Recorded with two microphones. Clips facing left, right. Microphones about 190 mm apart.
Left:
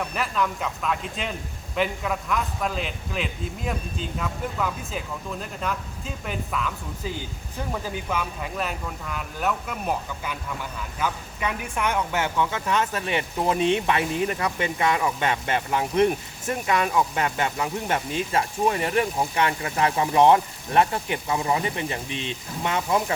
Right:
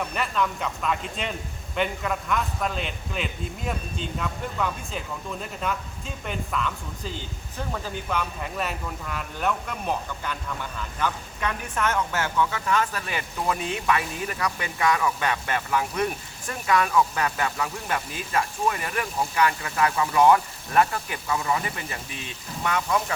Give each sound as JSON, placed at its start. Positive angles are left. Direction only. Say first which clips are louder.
{"t": 0.0, "sound": "a man's voice", "louder": "even", "side_deg": 0}